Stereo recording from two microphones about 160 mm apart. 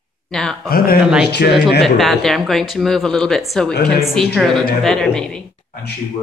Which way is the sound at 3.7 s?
90° left.